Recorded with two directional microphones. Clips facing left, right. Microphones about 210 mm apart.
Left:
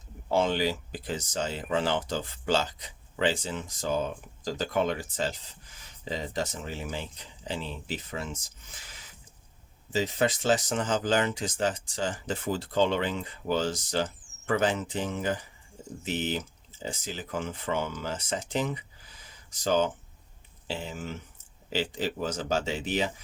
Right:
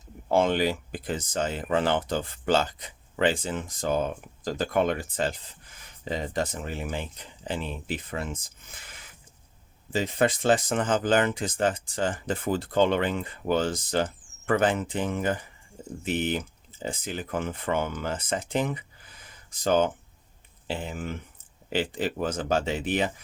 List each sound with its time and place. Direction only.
0.3 s speech: 55° right (ahead or behind)